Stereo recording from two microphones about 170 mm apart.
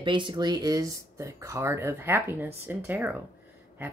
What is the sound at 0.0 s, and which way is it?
Speech, 30° right (ahead or behind).